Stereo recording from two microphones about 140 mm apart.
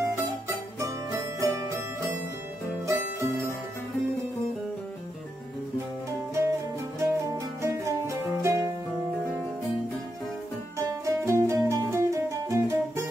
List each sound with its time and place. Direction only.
0.1 s music: 20° right (ahead or behind)
6.3 s music: 20° right (ahead or behind)
10.8 s music: 20° right (ahead or behind)